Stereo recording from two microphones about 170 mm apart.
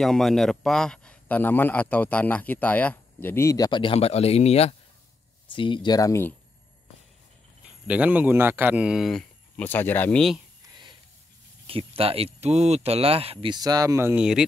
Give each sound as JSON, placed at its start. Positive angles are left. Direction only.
{"t": 0.0, "sound": "a man's voice", "side_deg": 0}
{"t": 7.8, "sound": "a man's voice", "side_deg": -10}
{"t": 11.6, "sound": "speech", "side_deg": -35}